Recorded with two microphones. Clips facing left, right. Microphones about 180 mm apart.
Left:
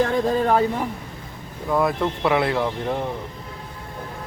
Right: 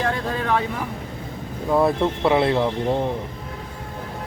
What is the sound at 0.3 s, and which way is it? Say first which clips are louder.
Speech: left 4 dB; 40° left (ahead or behind).